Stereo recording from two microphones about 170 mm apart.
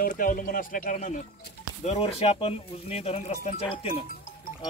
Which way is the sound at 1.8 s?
35° left (ahead or behind).